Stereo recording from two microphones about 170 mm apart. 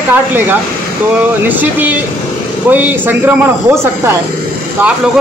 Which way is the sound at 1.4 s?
10° right (ahead or behind).